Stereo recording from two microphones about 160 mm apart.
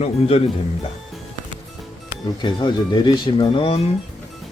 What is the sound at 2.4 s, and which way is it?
Speech, 30° left (ahead or behind).